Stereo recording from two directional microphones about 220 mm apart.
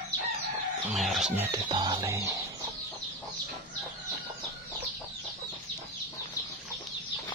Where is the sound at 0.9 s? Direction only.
Centre (ahead or behind).